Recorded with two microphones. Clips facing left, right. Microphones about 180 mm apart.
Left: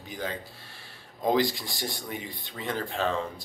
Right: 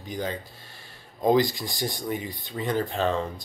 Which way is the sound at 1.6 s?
Centre (ahead or behind).